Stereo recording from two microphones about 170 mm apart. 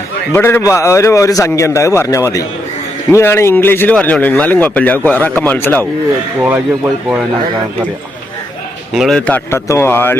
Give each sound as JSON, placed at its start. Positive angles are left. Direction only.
{"t": 0.3, "sound": "speech", "side_deg": 15}
{"t": 8.9, "sound": "speech", "side_deg": 0}